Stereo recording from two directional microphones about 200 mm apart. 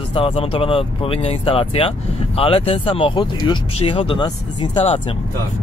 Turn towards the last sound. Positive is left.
turn(degrees=25)  # may be behind; listen again after turning